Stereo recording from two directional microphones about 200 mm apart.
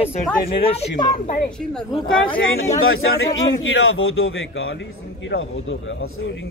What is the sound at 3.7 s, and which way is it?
Speech, 75° left (ahead or behind).